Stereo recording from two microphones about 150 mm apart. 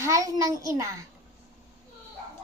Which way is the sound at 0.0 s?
20° right (ahead or behind).